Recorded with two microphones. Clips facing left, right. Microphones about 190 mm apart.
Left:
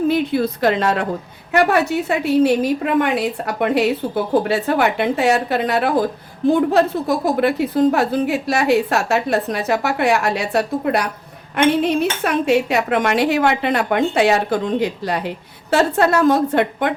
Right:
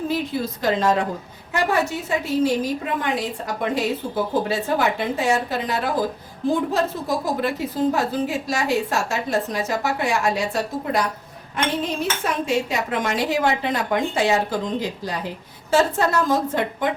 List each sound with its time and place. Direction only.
0.1 s a woman's voice: 65° left (ahead or behind)